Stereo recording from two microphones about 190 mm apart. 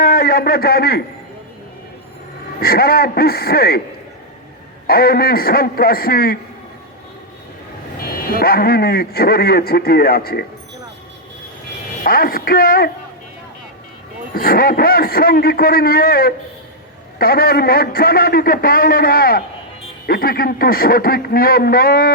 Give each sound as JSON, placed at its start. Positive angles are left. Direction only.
{"t": 0.0, "sound": "a man's voice", "side_deg": 50}
{"t": 2.6, "sound": "a man's voice", "side_deg": 55}
{"t": 4.9, "sound": "a man's voice", "side_deg": 55}
{"t": 8.3, "sound": "a man's voice", "side_deg": 55}
{"t": 12.0, "sound": "a man's voice", "side_deg": 50}
{"t": 14.3, "sound": "a man's voice", "side_deg": 50}